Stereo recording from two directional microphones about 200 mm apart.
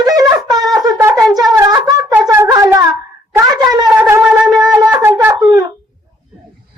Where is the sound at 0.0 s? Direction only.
20° right (ahead or behind).